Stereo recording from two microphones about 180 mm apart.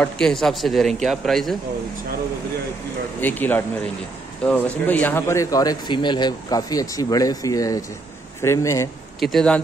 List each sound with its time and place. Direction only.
0.0 s speech: 5° left (ahead or behind)
3.2 s speech: 10° left (ahead or behind)
9.2 s speech: centre (ahead or behind)